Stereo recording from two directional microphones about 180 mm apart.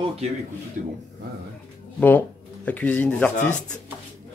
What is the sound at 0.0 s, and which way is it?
Speech, 35° right (ahead or behind).